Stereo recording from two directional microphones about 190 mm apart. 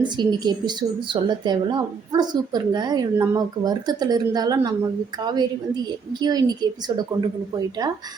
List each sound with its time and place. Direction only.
0.0 s speech: 25° right (ahead or behind)